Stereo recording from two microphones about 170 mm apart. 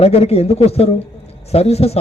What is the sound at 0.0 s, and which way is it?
A man's voice, 35° left (ahead or behind).